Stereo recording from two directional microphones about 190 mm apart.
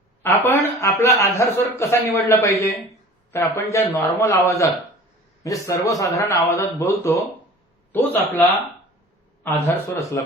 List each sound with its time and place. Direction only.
0.2 s a man's voice: 10° left (ahead or behind)